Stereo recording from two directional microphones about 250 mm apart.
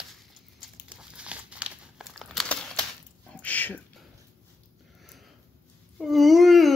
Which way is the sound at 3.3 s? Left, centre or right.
Centre.